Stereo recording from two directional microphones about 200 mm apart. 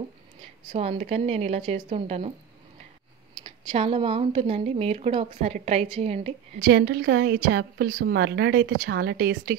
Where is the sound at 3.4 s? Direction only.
25° right (ahead or behind).